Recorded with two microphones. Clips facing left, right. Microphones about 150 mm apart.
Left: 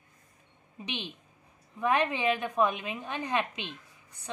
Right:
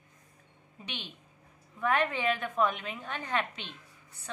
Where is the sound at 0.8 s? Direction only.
15° left (ahead or behind).